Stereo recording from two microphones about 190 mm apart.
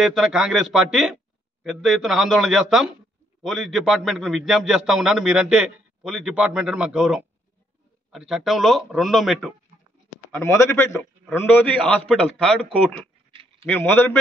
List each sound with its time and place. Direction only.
0.0 s a man's voice: centre (ahead or behind)
10.3 s a man's voice: 15° left (ahead or behind)